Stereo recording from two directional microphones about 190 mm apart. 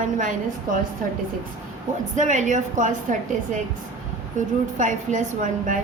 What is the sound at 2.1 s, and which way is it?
A woman's voice, 40° right (ahead or behind).